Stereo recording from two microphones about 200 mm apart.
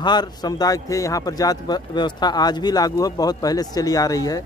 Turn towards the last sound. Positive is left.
turn(degrees=20)  # may be behind; listen again after turning